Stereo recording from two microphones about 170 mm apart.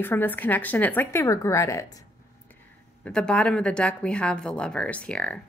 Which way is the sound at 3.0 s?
5° left (ahead or behind).